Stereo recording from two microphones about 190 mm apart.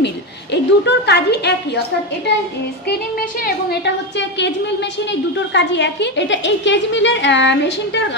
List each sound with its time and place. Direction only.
0.0 s a sound: 65° left (ahead or behind)
3.4 s a woman's voice: 65° left (ahead or behind)
5.5 s a woman's voice: 70° left (ahead or behind)